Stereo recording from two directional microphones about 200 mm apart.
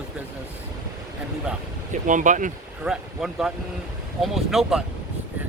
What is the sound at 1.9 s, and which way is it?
Speech, 40° right (ahead or behind).